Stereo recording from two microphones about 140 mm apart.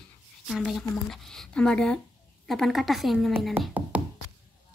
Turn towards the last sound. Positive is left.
turn(degrees=-15)  # may be behind; listen again after turning